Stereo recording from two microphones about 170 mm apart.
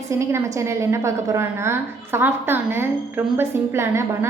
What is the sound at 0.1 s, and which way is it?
A woman's voice, 15° right (ahead or behind).